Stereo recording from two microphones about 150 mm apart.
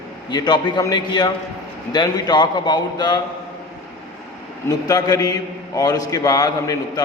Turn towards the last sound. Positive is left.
turn(degrees=25)  # may be behind; listen again after turning